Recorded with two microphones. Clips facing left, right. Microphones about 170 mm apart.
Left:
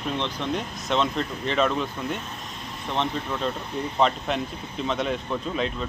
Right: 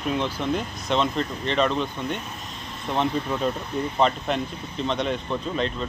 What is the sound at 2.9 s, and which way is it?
Speech, 10° right (ahead or behind).